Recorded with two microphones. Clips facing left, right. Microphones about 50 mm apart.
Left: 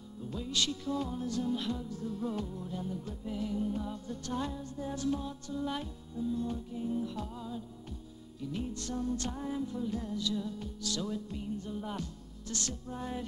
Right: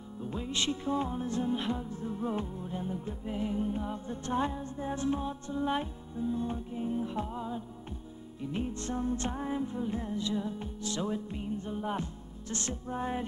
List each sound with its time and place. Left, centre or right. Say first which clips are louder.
0.2 s music: right 1 dB; right